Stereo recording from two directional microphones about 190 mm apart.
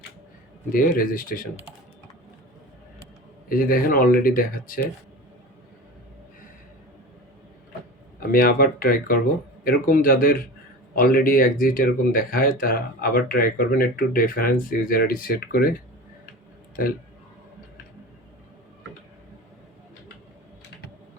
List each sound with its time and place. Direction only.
0.7 s speech: 45° left (ahead or behind)
3.5 s speech: 50° left (ahead or behind)
8.3 s speech: 50° left (ahead or behind)